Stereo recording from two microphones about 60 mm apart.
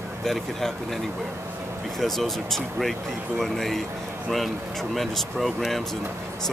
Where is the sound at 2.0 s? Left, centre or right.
Centre.